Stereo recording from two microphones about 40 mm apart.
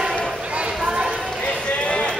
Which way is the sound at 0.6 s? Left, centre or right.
Right.